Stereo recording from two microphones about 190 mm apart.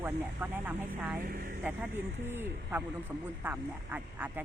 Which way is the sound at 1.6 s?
10° right (ahead or behind).